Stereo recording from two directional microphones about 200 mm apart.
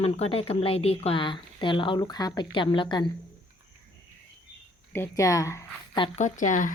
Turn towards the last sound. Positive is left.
turn(degrees=40)  # may be behind; listen again after turning